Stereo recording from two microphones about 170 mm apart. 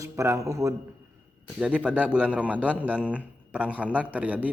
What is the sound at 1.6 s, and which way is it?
A man's voice, 5° right (ahead or behind).